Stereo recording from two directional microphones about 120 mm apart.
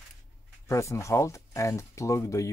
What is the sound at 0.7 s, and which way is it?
Speech, 25° left (ahead or behind).